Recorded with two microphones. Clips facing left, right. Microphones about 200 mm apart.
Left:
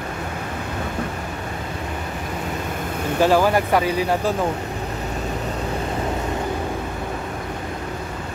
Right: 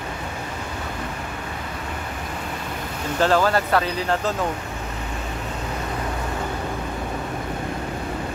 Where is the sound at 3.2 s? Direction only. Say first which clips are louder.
Left 2 dB; 10° left (ahead or behind).